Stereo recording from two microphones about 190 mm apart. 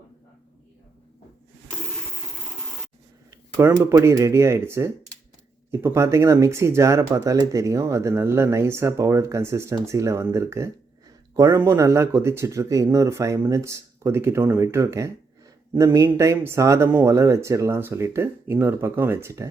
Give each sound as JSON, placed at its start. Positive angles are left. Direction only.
{"t": 3.2, "sound": "speech", "side_deg": -15}